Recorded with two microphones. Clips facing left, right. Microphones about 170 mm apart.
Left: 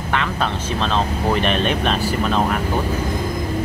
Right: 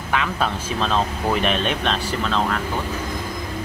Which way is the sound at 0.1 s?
5° right (ahead or behind).